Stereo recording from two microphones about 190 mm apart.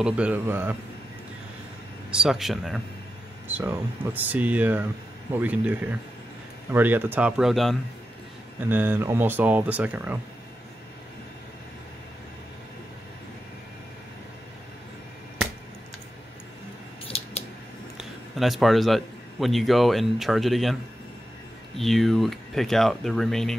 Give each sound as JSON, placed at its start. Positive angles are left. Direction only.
{"t": 0.0, "sound": "speech", "side_deg": -5}
{"t": 2.0, "sound": "speech", "side_deg": -5}
{"t": 17.0, "sound": "scissors", "side_deg": 30}
{"t": 17.9, "sound": "a man's voice", "side_deg": 0}
{"t": 21.7, "sound": "speech", "side_deg": 0}